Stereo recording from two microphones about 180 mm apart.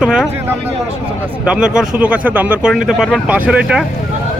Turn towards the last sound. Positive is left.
turn(degrees=-5)  # may be behind; listen again after turning